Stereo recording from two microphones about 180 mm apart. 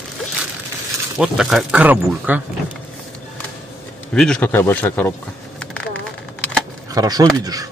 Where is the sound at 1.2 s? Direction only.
Centre (ahead or behind).